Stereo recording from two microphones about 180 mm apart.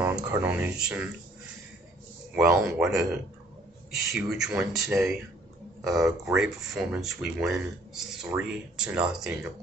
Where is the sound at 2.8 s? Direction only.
Centre (ahead or behind).